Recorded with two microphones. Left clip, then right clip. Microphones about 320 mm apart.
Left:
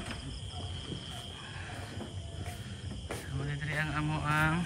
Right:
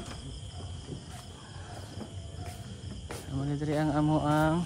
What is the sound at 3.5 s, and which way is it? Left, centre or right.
Speech, centre.